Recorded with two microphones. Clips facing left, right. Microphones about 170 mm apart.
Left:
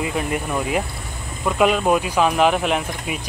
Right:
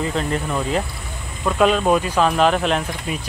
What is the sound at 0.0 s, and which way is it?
Speech, 10° left (ahead or behind).